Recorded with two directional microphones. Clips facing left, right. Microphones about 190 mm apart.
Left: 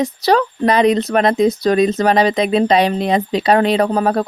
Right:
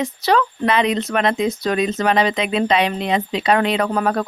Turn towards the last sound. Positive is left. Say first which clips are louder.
# left 4 dB
turn(degrees=30)  # may be behind; listen again after turning